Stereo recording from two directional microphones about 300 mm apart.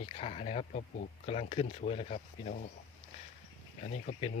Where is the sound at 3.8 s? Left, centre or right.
Left.